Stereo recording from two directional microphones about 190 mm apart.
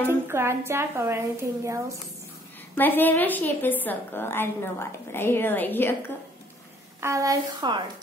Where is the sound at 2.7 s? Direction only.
10° left (ahead or behind).